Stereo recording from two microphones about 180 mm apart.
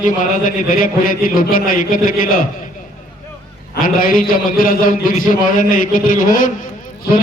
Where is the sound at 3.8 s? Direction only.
50° left (ahead or behind).